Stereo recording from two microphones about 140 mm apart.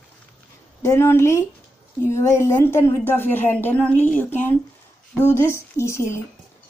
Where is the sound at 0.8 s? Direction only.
20° left (ahead or behind).